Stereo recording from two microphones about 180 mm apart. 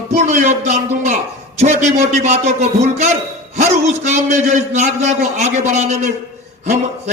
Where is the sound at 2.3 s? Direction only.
40° right (ahead or behind).